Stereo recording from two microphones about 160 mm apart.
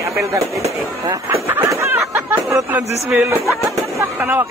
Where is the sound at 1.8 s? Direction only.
10° right (ahead or behind).